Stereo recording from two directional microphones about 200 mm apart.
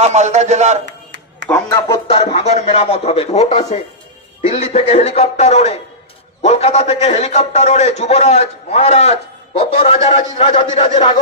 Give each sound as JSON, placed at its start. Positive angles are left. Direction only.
{"t": 0.0, "sound": "a man's voice", "side_deg": -35}
{"t": 1.5, "sound": "speech", "side_deg": 20}
{"t": 2.0, "sound": "a man's voice", "side_deg": 30}